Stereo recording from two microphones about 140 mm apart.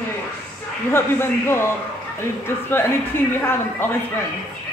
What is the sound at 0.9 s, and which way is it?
Speech, 15° left (ahead or behind).